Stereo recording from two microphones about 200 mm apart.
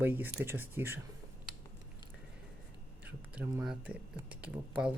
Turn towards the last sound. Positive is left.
turn(degrees=-5)  # may be behind; listen again after turning